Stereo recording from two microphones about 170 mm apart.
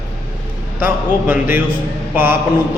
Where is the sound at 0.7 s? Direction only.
10° right (ahead or behind).